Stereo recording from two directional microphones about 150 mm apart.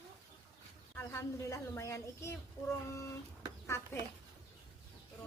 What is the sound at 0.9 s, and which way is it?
Speech, 15° left (ahead or behind).